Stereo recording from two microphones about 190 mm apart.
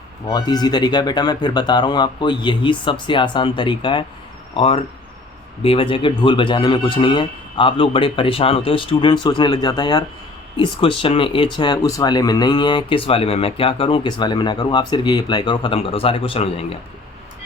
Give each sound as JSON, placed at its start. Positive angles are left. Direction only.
{"t": 0.3, "sound": "speech", "side_deg": 20}